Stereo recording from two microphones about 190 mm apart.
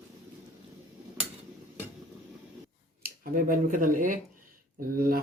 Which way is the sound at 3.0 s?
45° right (ahead or behind).